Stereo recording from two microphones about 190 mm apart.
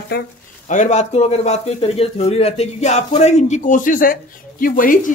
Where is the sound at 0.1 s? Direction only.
50° left (ahead or behind).